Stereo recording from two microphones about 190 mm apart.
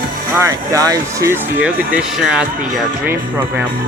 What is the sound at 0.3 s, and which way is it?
Speech, 15° right (ahead or behind).